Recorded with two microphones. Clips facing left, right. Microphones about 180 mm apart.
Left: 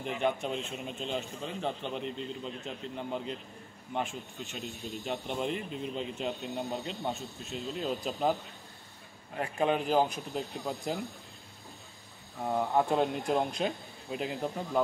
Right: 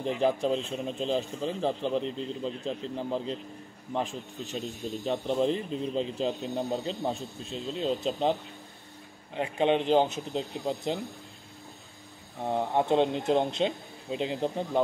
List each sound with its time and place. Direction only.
0.0 s a man's voice: 35° right (ahead or behind)
12.4 s speech: 25° right (ahead or behind)